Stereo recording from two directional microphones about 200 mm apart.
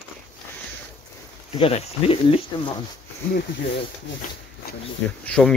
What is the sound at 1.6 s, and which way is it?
Speech, 30° left (ahead or behind).